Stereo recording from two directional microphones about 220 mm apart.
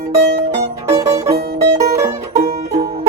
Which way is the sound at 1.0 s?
15° right (ahead or behind).